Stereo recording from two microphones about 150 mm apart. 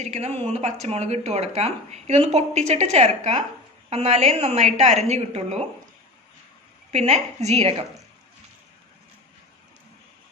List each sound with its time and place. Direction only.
0.0 s speech: 45° right (ahead or behind)
6.9 s speech: 45° right (ahead or behind)